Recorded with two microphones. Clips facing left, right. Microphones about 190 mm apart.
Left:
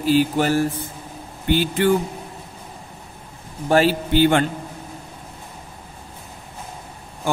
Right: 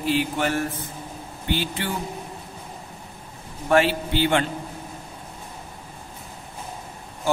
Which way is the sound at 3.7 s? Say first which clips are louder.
Left 3 dB; 40° left (ahead or behind).